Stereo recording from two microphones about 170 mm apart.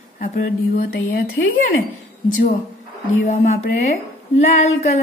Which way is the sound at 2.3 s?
50° left (ahead or behind).